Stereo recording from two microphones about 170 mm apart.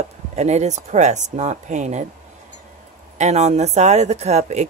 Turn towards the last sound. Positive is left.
turn(degrees=-40)  # may be behind; listen again after turning